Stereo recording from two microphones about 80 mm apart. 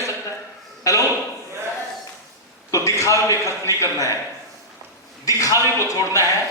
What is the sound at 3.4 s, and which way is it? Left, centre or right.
Speech, left.